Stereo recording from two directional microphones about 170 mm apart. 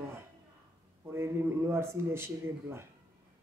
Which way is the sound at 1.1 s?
15° right (ahead or behind).